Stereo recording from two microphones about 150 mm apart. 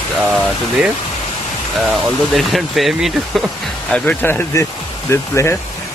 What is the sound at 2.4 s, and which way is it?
Speech, centre (ahead or behind).